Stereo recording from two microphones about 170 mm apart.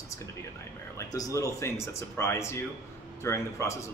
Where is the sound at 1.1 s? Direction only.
20° left (ahead or behind).